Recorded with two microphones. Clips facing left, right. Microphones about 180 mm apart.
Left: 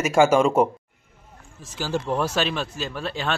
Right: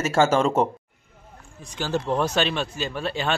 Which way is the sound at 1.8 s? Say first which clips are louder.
Right 1 dB; 5° left (ahead or behind).